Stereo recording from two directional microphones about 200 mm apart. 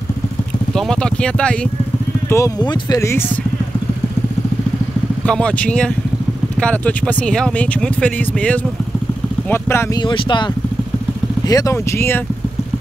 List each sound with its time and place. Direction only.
0.7 s speech: 5° left (ahead or behind)
2.2 s speech: 15° left (ahead or behind)
5.2 s speech: 5° left (ahead or behind)